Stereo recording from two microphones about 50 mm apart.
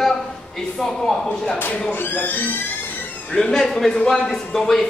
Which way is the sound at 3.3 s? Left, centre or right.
Centre.